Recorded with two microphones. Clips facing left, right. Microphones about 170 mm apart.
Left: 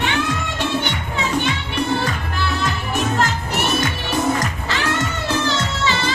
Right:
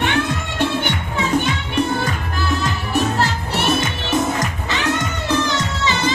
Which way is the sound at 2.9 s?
35° right (ahead or behind).